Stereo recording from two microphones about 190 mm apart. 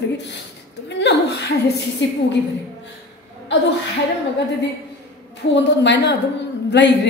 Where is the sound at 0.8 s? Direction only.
65° left (ahead or behind).